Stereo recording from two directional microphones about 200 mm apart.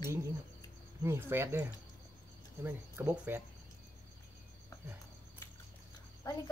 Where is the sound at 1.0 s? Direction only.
10° right (ahead or behind).